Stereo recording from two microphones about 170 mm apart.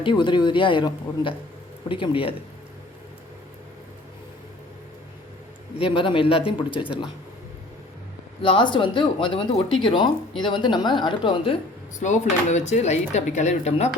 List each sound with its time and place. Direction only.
0.0 s a man's voice: 25° left (ahead or behind)
5.8 s a man's voice: 30° left (ahead or behind)
8.4 s speech: 30° left (ahead or behind)
11.9 s speech: 45° left (ahead or behind)